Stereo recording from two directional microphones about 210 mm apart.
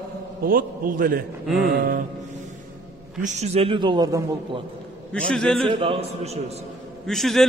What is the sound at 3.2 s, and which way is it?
Speech, 30° right (ahead or behind).